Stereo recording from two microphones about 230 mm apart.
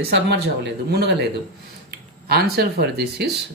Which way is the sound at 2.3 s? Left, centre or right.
Right.